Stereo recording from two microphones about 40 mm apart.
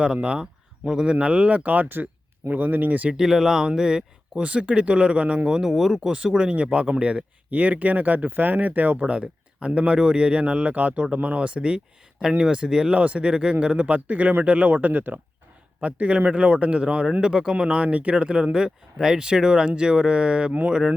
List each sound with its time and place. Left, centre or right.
0.0 s speech: right
3.2 s speech: centre; by 5.5 s right
5.5 s speech: centre
6.0 s speech: right
7.5 s speech: right
9.0 s speech: right
10.4 s speech: right; by 12.9 s centre
12.9 s speech: right
13.2 s speech: right
13.6 s speech: right
15.8 s speech: right